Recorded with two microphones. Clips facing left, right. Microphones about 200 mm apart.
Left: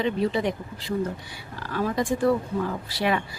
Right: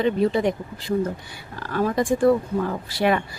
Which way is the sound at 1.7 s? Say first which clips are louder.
Right 4 dB; 50° right (ahead or behind).